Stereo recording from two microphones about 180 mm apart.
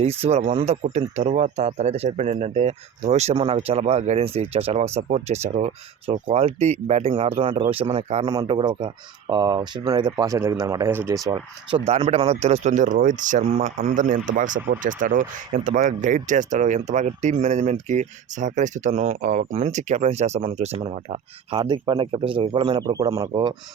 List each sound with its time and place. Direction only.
0.0 s speech: 35° right (ahead or behind)
8.3 s speech: 25° right (ahead or behind)
11.3 s speech: 25° right (ahead or behind)